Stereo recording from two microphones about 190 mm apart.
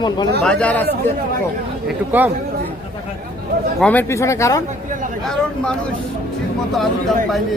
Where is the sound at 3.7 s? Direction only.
10° left (ahead or behind).